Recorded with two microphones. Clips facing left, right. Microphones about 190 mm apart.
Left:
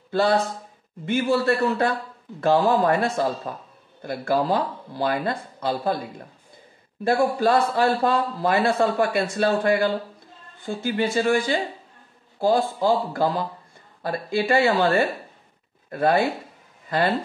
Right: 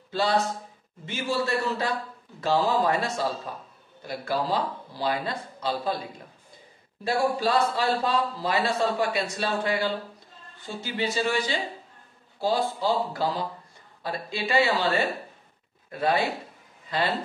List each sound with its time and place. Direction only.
0.1 s a man's voice: 55° left (ahead or behind)
7.1 s a man's voice: 50° left (ahead or behind)